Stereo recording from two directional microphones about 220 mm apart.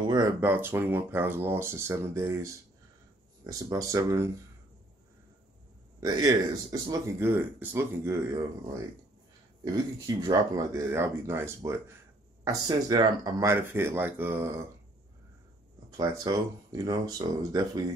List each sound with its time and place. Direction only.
0.1 s speech: 15° right (ahead or behind)
5.9 s speech: 15° right (ahead or behind)
10.0 s speech: 15° right (ahead or behind)
16.0 s speech: 15° right (ahead or behind)